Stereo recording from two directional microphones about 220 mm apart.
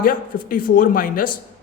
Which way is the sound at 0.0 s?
40° left (ahead or behind).